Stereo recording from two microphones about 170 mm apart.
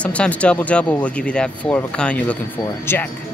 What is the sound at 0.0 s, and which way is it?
Speech, 10° left (ahead or behind).